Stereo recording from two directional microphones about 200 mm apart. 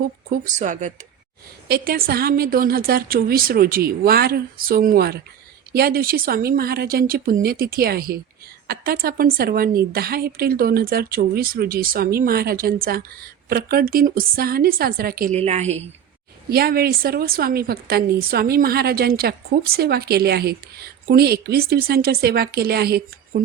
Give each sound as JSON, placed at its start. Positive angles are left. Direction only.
{"t": 0.3, "sound": "speech", "side_deg": -40}
{"t": 1.6, "sound": "a woman's voice", "side_deg": -50}
{"t": 15.4, "sound": "speech", "side_deg": -35}
{"t": 16.5, "sound": "a woman's voice", "side_deg": -50}